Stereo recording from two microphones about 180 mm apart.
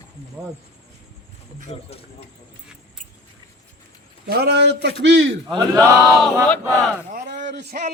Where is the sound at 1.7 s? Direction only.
30° left (ahead or behind).